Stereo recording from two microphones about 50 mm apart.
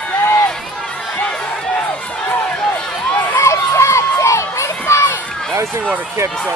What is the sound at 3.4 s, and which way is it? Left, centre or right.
Crowd, left.